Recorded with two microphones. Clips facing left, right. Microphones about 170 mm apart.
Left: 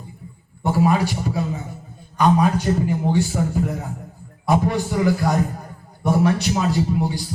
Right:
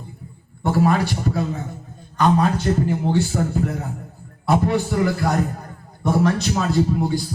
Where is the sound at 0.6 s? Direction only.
10° left (ahead or behind).